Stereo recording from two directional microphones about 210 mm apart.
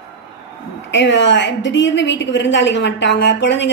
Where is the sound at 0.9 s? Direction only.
60° left (ahead or behind).